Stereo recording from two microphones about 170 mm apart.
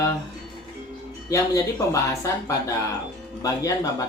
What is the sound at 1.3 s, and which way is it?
Speech, 20° left (ahead or behind).